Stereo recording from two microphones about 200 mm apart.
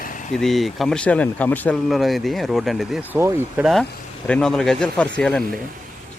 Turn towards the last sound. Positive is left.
turn(degrees=5)  # may be behind; listen again after turning